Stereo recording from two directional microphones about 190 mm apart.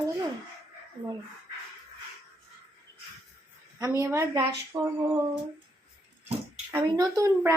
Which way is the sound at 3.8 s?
15° right (ahead or behind).